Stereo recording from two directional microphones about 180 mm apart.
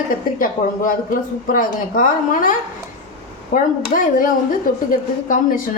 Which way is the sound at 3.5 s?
50° left (ahead or behind).